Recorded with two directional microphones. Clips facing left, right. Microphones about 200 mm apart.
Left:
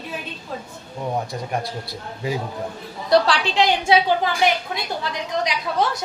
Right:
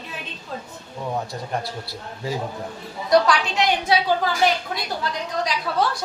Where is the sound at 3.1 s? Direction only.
30° left (ahead or behind).